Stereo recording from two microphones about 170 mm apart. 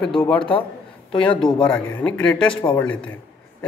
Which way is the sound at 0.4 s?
30° left (ahead or behind).